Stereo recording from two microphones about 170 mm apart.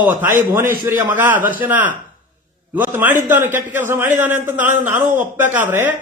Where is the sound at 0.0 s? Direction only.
10° right (ahead or behind).